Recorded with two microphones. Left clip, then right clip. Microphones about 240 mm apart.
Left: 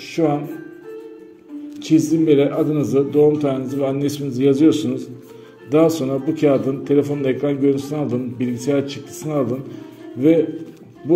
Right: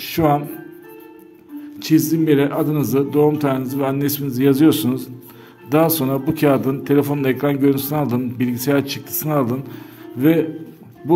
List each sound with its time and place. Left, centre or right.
0.0 s music: right
1.8 s speech: right